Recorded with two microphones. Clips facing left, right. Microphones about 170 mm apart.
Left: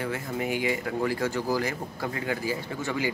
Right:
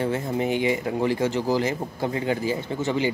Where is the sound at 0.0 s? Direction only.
25° right (ahead or behind).